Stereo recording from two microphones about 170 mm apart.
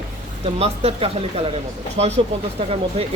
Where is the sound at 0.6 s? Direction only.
35° right (ahead or behind).